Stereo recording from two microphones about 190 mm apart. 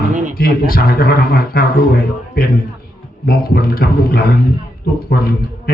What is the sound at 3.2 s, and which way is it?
A man's voice, 50° left (ahead or behind).